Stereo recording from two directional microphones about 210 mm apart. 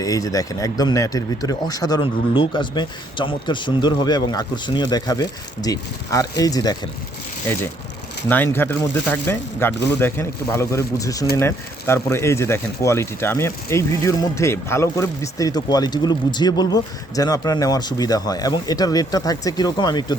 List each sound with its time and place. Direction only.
0.0 s speech: 15° left (ahead or behind)